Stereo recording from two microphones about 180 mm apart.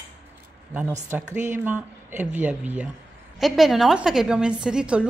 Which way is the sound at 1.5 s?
10° right (ahead or behind).